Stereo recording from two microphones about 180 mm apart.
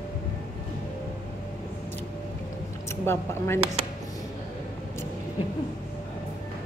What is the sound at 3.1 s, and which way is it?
Speech, 15° left (ahead or behind).